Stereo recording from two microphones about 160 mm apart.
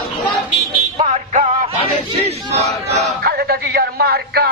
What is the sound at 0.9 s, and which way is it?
Music, 45° right (ahead or behind).